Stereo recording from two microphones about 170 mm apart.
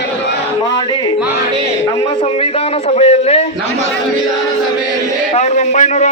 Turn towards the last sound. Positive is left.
turn(degrees=45)  # may be behind; listen again after turning